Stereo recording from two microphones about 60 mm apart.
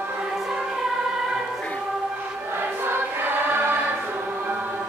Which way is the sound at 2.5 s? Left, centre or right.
Right.